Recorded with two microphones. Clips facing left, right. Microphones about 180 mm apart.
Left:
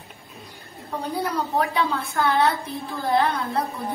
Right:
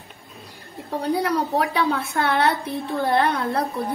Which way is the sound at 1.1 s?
80° right.